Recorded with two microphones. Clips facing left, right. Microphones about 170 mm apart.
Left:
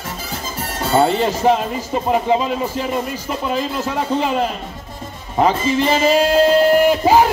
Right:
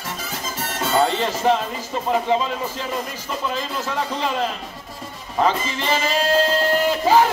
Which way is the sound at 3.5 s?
15° left (ahead or behind).